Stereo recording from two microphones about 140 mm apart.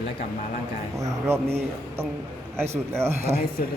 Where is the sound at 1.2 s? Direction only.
20° right (ahead or behind).